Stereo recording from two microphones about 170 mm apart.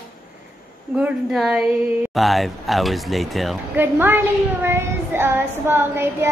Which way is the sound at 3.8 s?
10° right (ahead or behind).